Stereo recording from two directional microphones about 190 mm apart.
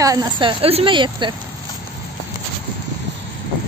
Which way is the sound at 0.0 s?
20° right (ahead or behind).